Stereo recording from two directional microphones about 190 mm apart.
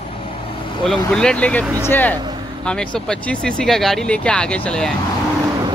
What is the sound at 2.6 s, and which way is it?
Speech, 5° left (ahead or behind).